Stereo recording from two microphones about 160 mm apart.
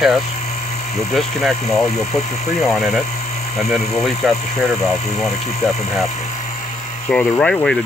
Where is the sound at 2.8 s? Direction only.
Centre (ahead or behind).